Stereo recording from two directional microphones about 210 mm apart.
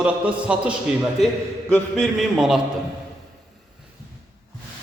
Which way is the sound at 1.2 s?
30° left (ahead or behind).